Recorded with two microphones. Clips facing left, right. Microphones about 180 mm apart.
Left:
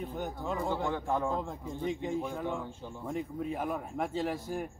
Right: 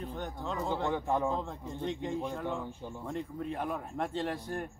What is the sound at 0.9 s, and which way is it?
Speech, 15° right (ahead or behind).